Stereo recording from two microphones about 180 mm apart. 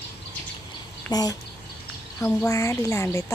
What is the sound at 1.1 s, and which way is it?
Speech, 20° left (ahead or behind).